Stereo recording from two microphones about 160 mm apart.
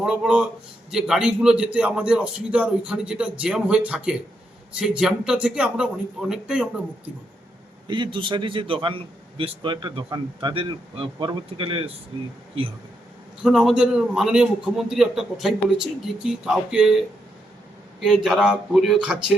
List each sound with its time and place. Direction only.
0.0 s a man's voice: 5° right (ahead or behind)
7.9 s a man's voice: 30° right (ahead or behind)
13.4 s a man's voice: 5° right (ahead or behind)
18.0 s a man's voice: centre (ahead or behind)